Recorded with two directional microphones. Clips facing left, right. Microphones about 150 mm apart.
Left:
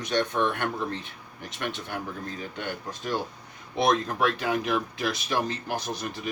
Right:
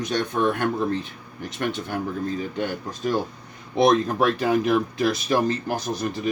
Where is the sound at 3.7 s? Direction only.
40° right (ahead or behind).